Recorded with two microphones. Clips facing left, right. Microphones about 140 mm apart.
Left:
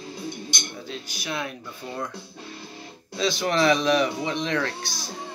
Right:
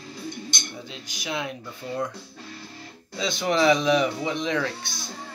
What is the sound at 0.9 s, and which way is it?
Music, 20° right (ahead or behind).